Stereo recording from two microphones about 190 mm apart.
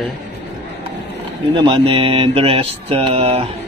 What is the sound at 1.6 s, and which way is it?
Speech, 30° right (ahead or behind).